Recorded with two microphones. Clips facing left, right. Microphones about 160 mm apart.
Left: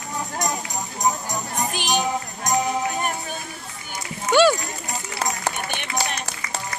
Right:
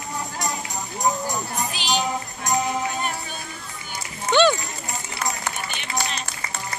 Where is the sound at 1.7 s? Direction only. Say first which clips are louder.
Left 1 dB; 50° left (ahead or behind).